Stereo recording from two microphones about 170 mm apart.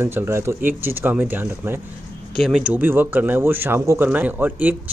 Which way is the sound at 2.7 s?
10° right (ahead or behind).